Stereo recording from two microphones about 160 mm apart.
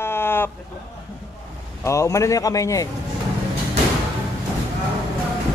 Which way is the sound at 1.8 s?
20° left (ahead or behind).